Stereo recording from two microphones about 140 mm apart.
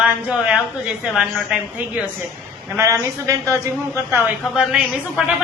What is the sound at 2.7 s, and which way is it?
A woman's voice, 20° right (ahead or behind).